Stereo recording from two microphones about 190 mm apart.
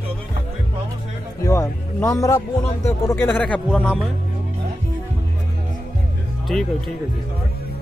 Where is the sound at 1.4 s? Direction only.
15° left (ahead or behind).